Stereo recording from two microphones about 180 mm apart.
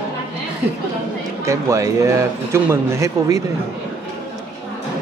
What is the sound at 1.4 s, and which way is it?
A man's voice, 15° right (ahead or behind).